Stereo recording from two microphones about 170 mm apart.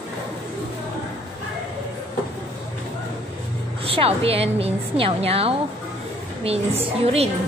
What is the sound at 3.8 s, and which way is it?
A woman's voice, 35° right (ahead or behind).